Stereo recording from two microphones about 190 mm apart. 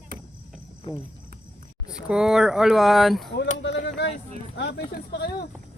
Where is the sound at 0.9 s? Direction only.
25° left (ahead or behind).